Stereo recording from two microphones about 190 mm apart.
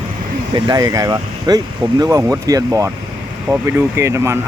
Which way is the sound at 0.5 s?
20° right (ahead or behind).